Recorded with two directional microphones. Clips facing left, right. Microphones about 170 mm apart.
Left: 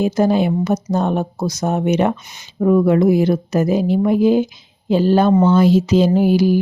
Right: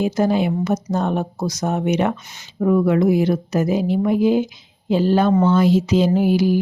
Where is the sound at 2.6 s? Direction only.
30° left (ahead or behind).